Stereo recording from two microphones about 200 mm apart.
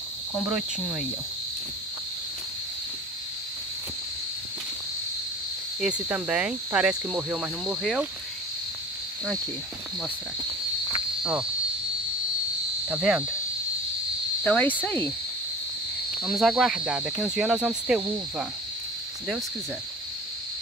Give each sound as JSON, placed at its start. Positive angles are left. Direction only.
{"t": 0.5, "sound": "speech", "side_deg": -5}
{"t": 5.8, "sound": "speech", "side_deg": -5}
{"t": 10.9, "sound": "cricket", "side_deg": -5}
{"t": 12.8, "sound": "speech", "side_deg": -5}
{"t": 14.4, "sound": "insect", "side_deg": 10}
{"t": 16.3, "sound": "speech", "side_deg": 0}